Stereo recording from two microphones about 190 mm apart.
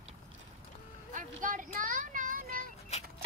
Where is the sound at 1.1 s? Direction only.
40° right (ahead or behind).